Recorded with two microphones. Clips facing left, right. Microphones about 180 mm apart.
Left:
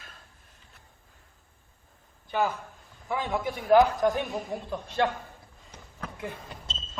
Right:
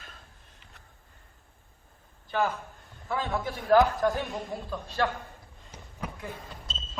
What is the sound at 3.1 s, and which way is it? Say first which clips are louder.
A man's voice: left 1 dB; 15° left (ahead or behind).